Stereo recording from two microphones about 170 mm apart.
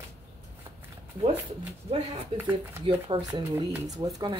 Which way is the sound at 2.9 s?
35° right (ahead or behind).